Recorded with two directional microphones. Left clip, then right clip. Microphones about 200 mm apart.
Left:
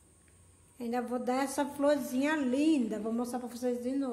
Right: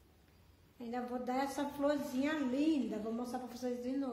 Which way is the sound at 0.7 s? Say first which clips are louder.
Left 7 dB; 30° left (ahead or behind).